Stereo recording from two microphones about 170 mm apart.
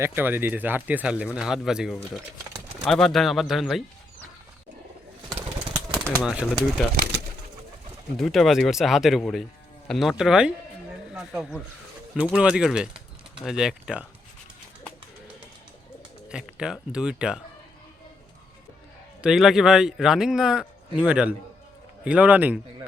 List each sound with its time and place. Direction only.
0.0 s a man's voice: 15° right (ahead or behind)
6.2 s a man's voice: 5° right (ahead or behind)
8.2 s a man's voice: centre (ahead or behind)
16.3 s a man's voice: 5° right (ahead or behind)
19.2 s a man's voice: 5° right (ahead or behind)